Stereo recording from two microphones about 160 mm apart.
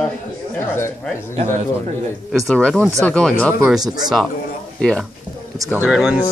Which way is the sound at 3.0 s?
5° left (ahead or behind).